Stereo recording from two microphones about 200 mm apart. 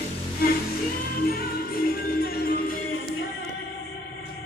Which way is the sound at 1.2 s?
50° left (ahead or behind).